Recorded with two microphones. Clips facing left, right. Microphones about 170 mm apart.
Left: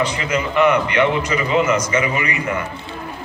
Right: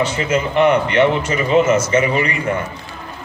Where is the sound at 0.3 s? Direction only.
30° right (ahead or behind).